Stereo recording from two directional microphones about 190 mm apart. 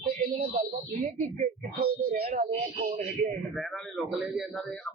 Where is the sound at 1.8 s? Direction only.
55° right (ahead or behind).